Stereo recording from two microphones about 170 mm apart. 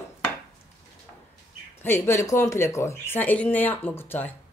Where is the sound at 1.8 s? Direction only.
15° left (ahead or behind).